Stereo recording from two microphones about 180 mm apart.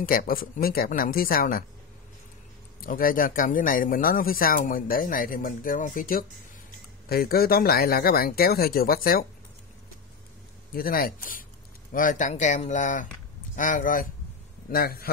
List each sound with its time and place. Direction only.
0.0 s speech: 50° left (ahead or behind)
2.8 s speech: 50° left (ahead or behind)
10.7 s speech: 55° left (ahead or behind)